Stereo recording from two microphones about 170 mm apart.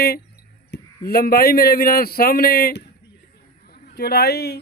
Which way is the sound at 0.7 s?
65° left (ahead or behind).